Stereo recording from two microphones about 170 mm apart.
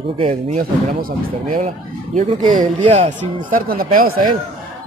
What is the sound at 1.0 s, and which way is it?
Speech, 50° right (ahead or behind).